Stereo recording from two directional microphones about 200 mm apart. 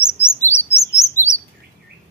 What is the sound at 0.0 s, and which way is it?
Chirp, 10° left (ahead or behind).